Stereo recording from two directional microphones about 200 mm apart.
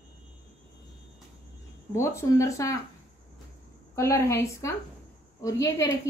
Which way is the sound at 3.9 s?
15° left (ahead or behind).